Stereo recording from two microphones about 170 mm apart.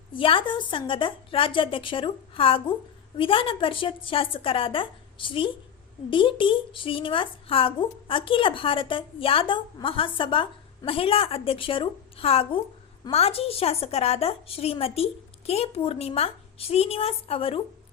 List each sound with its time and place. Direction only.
0.1 s speech: 30° left (ahead or behind)